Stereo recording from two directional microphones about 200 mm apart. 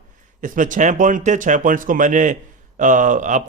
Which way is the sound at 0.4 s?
40° right (ahead or behind).